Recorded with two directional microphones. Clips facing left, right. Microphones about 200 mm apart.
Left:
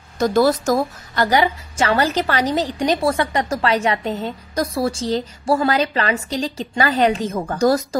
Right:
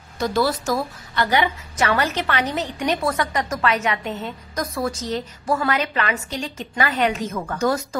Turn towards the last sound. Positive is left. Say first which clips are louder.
# left 5 dB
turn(degrees=35)  # may be behind; listen again after turning